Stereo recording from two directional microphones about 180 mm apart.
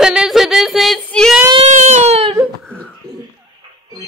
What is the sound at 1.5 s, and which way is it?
Baby cry, 40° right (ahead or behind).